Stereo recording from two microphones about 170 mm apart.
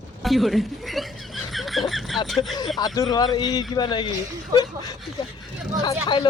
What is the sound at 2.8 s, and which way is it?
A man's voice, 20° left (ahead or behind).